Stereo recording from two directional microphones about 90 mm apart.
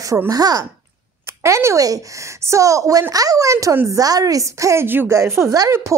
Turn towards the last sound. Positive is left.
turn(degrees=-30)  # may be behind; listen again after turning